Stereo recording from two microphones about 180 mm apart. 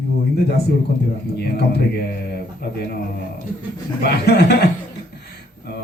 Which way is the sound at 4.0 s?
65° left (ahead or behind).